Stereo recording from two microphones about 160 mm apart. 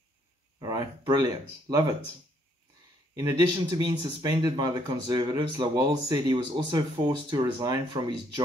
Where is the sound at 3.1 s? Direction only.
20° right (ahead or behind).